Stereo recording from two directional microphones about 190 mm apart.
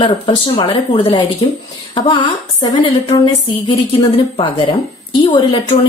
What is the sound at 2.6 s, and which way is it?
A woman's voice, 25° left (ahead or behind).